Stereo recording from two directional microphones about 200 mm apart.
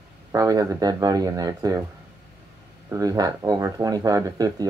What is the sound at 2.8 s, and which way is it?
Speech, 15° right (ahead or behind).